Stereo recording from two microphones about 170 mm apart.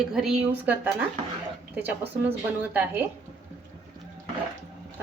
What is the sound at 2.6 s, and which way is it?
Speech, 10° right (ahead or behind).